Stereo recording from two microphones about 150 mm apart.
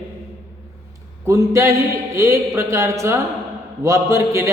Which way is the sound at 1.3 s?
20° right (ahead or behind).